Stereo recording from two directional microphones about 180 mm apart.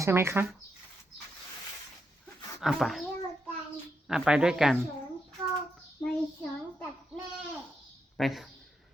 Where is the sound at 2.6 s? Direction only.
Centre (ahead or behind).